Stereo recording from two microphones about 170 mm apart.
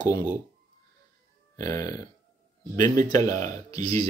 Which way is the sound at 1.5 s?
20° left (ahead or behind).